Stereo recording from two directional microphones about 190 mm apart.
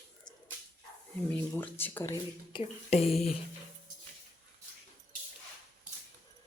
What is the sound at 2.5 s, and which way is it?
Speech, 25° left (ahead or behind).